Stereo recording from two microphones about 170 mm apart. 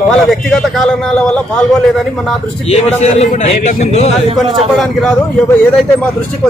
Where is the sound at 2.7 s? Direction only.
40° left (ahead or behind).